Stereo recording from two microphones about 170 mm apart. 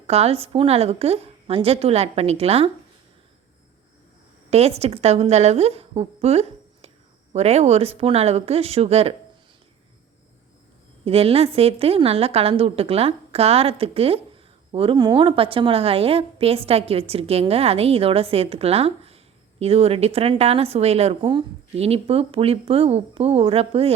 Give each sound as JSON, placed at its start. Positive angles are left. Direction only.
{"t": 0.1, "sound": "a woman's voice", "side_deg": -35}
{"t": 4.5, "sound": "a woman's voice", "side_deg": -40}
{"t": 11.0, "sound": "a woman's voice", "side_deg": -35}